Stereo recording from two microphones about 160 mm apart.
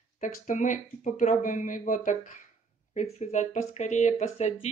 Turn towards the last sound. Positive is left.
turn(degrees=40)  # may be behind; listen again after turning